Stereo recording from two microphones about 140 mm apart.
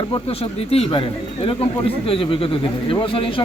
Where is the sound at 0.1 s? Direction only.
45° left (ahead or behind).